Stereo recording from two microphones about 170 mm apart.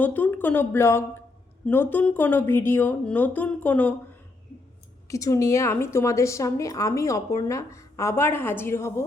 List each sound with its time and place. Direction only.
0.0 s a woman's voice: 10° left (ahead or behind)
5.0 s a woman's voice: 20° left (ahead or behind)